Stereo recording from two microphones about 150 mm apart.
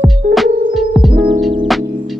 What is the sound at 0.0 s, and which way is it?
Music, centre (ahead or behind).